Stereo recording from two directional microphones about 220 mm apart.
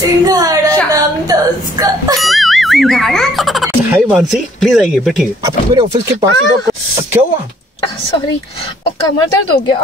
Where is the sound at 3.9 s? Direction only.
10° right (ahead or behind).